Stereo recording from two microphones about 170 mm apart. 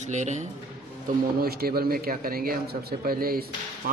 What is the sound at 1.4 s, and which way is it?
A man's voice, 60° right (ahead or behind).